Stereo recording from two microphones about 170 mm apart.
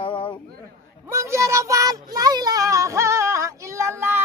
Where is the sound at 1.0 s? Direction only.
15° right (ahead or behind).